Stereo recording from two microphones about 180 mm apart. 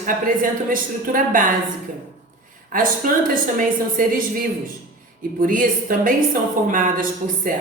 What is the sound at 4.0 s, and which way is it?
Speech, 50° right (ahead or behind).